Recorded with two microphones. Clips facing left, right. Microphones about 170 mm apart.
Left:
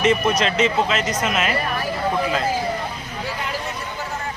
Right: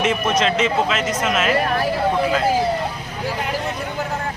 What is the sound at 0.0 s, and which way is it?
Speech, centre (ahead or behind).